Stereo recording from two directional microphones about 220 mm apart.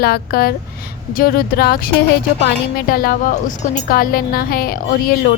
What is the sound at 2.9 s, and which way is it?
A woman's voice, 40° left (ahead or behind).